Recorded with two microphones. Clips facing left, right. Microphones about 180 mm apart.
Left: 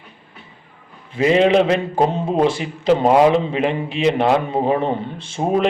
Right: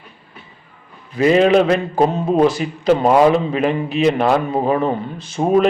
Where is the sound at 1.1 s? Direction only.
25° left (ahead or behind).